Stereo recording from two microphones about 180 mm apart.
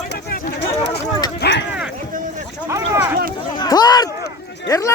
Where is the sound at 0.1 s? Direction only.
55° left (ahead or behind).